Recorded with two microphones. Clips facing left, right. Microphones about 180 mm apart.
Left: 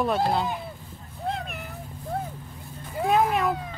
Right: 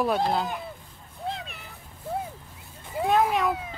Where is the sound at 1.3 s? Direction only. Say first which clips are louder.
Left 5 dB; 55° left (ahead or behind).